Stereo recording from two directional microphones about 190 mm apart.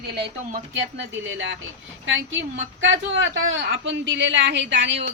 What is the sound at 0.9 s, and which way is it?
A woman's voice, 75° right (ahead or behind).